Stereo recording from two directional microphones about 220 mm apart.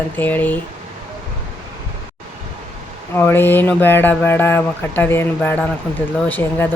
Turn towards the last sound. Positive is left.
turn(degrees=10)  # may be behind; listen again after turning